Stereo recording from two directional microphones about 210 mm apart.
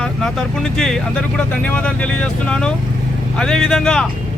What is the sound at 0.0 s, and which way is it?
Speech, 5° left (ahead or behind).